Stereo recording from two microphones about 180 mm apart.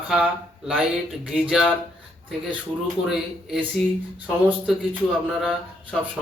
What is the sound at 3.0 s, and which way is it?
Speech, centre (ahead or behind).